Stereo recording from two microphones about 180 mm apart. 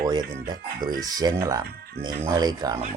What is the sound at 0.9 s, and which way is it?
Speech, 20° right (ahead or behind).